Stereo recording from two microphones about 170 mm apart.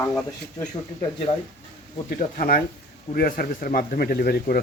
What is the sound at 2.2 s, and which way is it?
Speech, 60° left (ahead or behind).